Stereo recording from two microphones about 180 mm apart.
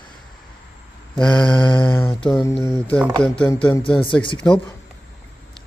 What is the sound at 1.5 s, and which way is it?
Mantra, 25° left (ahead or behind).